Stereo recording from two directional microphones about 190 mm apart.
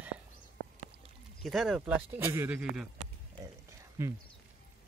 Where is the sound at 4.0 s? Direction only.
15° right (ahead or behind).